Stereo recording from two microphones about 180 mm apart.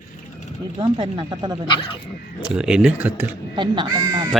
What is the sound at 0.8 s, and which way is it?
Speech, 25° right (ahead or behind).